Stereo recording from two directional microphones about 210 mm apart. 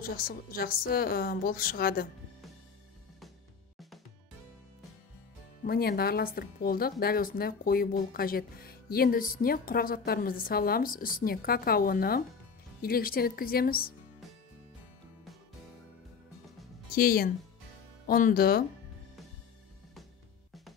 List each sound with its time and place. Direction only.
0.0 s speech: 45° left (ahead or behind)
5.6 s speech: 45° left (ahead or behind)
16.9 s speech: 45° left (ahead or behind)